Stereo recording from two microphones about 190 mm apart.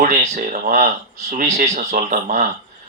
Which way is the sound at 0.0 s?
40° right (ahead or behind).